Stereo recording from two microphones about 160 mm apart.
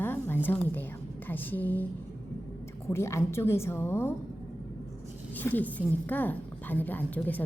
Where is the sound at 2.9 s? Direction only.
15° left (ahead or behind).